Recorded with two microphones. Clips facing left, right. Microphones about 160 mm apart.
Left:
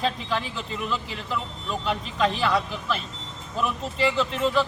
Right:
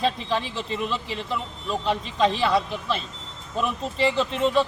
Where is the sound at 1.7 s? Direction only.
25° right (ahead or behind).